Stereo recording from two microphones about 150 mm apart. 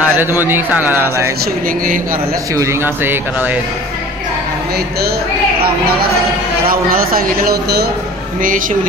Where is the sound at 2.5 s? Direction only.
20° right (ahead or behind).